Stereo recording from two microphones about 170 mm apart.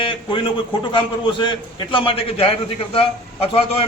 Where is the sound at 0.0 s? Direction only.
30° left (ahead or behind).